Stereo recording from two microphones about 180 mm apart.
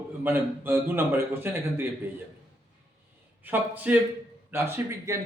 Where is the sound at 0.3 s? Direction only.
15° right (ahead or behind).